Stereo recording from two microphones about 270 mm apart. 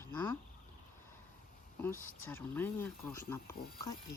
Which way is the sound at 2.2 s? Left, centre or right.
Centre.